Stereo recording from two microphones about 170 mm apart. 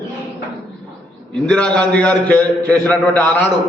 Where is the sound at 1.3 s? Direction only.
5° left (ahead or behind).